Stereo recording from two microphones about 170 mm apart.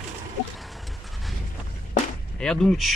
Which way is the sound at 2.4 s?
Centre (ahead or behind).